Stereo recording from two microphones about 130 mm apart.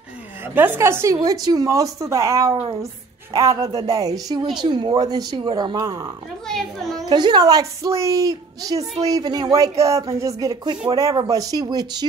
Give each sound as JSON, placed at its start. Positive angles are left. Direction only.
{"t": 0.6, "sound": "speech", "side_deg": -15}
{"t": 7.1, "sound": "speech", "side_deg": -35}